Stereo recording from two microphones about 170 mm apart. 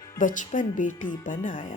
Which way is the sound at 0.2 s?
50° left (ahead or behind).